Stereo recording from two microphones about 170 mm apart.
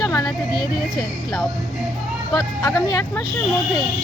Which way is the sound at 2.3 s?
20° left (ahead or behind).